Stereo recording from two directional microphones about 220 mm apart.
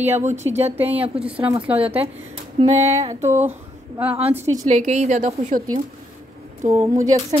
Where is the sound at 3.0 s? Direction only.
30° right (ahead or behind).